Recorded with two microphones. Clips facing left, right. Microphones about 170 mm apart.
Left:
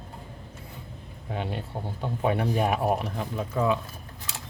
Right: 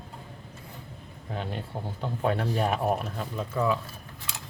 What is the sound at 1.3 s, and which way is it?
Speech, 10° left (ahead or behind).